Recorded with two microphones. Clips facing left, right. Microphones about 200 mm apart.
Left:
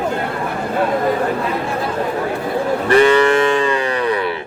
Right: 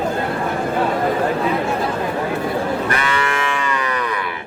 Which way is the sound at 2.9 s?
35° left (ahead or behind).